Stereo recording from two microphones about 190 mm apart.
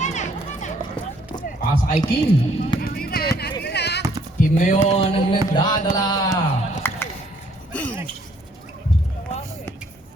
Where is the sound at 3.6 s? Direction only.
60° left (ahead or behind).